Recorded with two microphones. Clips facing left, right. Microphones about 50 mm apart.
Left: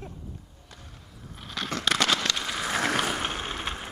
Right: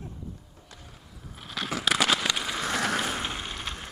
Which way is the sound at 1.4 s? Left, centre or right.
Centre.